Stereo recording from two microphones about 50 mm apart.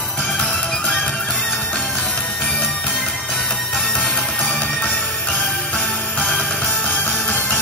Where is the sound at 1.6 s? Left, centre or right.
Left; by 4.1 s centre.